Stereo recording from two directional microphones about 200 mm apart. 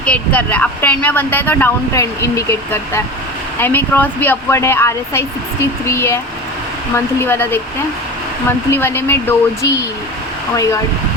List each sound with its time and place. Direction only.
0.0 s speech: 5° left (ahead or behind)